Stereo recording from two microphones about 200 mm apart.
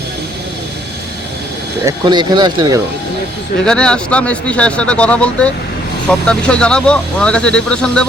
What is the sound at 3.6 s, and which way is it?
Speech, 5° left (ahead or behind).